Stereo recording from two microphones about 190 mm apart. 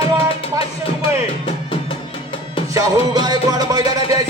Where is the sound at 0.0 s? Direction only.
30° left (ahead or behind).